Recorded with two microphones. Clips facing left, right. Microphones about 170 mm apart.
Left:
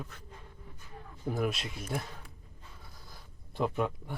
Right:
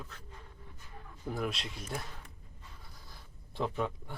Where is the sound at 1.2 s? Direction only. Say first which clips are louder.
Left 4 dB; 5° left (ahead or behind).